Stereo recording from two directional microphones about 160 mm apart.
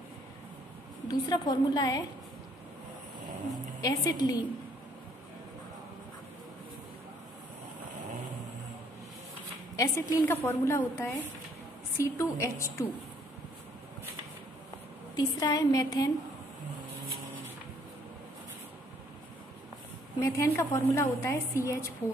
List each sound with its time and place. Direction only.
1.0 s a woman's voice: 25° left (ahead or behind)
3.8 s a woman's voice: 20° left (ahead or behind)
9.8 s a woman's voice: 15° left (ahead or behind)
15.1 s a woman's voice: 20° left (ahead or behind)
20.2 s a woman's voice: 20° left (ahead or behind)